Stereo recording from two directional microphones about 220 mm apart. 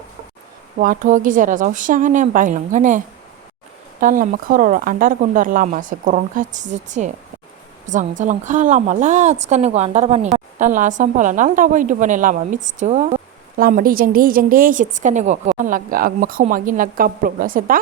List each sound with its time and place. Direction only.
0.8 s a woman's voice: 35° right (ahead or behind)
4.0 s a woman's voice: 35° right (ahead or behind)